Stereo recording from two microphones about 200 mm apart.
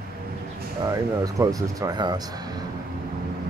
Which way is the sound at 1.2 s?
15° right (ahead or behind).